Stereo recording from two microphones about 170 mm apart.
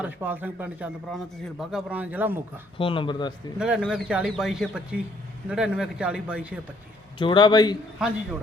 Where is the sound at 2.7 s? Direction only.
30° left (ahead or behind).